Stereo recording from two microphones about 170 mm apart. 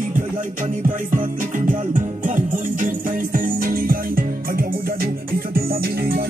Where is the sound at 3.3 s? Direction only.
55° right (ahead or behind).